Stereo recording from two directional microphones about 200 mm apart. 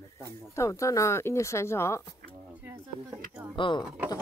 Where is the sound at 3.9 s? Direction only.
10° right (ahead or behind).